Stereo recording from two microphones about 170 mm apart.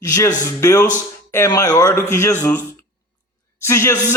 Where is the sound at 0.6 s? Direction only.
20° left (ahead or behind).